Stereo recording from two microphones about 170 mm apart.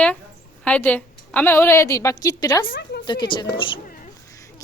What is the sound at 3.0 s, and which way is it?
Speech, 25° left (ahead or behind).